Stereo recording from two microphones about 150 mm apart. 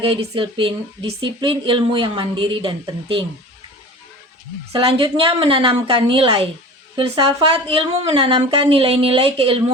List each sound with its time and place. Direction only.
0.0 s speech: 40° right (ahead or behind)
4.7 s speech: 40° right (ahead or behind)